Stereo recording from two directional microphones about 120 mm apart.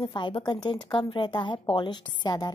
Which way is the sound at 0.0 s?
40° left (ahead or behind).